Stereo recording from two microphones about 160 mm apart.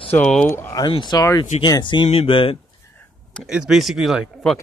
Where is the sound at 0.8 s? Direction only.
30° left (ahead or behind).